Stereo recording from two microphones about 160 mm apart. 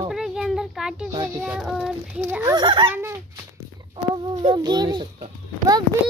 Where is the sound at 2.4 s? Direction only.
30° right (ahead or behind).